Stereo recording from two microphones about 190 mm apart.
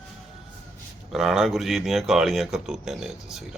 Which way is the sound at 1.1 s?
Centre (ahead or behind).